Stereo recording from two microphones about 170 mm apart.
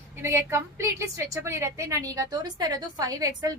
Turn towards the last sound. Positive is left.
turn(degrees=-20)  # may be behind; listen again after turning